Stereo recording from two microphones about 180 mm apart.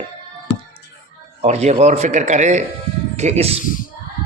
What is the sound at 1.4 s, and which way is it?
Speech, 35° right (ahead or behind).